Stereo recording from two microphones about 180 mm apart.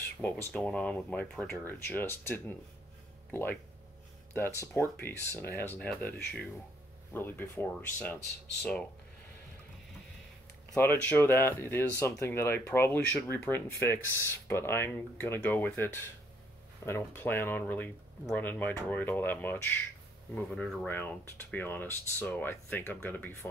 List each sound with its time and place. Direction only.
0.2 s speech: 10° left (ahead or behind)
10.7 s speech: 10° left (ahead or behind)